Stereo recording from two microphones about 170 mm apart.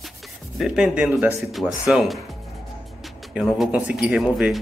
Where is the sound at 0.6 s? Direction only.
5° right (ahead or behind).